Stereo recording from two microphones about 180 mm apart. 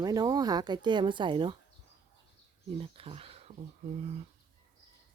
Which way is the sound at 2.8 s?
30° right (ahead or behind).